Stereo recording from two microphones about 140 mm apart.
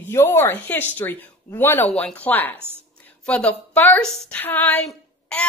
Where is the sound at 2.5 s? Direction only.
15° right (ahead or behind).